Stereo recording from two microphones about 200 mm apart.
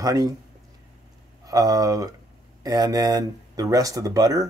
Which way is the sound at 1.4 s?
15° right (ahead or behind).